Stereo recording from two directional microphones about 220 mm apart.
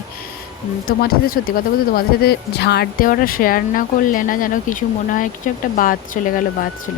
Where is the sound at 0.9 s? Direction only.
40° left (ahead or behind).